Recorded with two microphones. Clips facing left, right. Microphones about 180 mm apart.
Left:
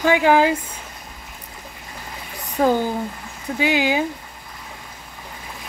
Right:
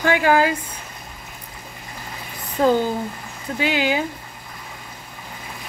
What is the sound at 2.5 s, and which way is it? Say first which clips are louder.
Speech: right 1 dB; 15° left (ahead or behind).